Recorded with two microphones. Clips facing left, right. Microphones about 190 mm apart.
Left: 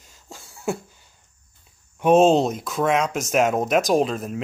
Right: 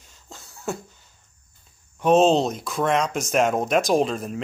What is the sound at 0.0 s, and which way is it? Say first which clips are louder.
Beatboxing: left 2 dB; 5° left (ahead or behind).